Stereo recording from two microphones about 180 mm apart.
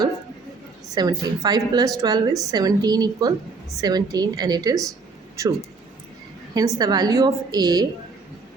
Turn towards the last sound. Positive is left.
turn(degrees=-20)  # may be behind; listen again after turning